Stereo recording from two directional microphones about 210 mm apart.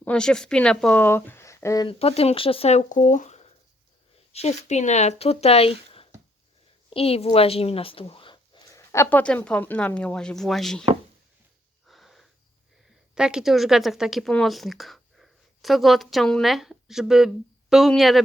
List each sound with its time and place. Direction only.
0.0 s a woman's voice: 5° left (ahead or behind)
11.9 s wheeze: centre (ahead or behind)
13.1 s a woman's voice: 5° right (ahead or behind)